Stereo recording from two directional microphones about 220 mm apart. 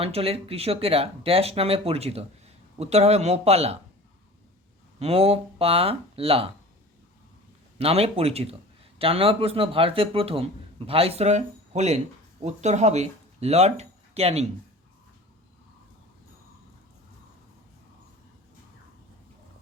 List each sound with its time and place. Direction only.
0.0 s a man's voice: 25° right (ahead or behind)
4.9 s a man's voice: 25° right (ahead or behind)
7.8 s a man's voice: 25° right (ahead or behind)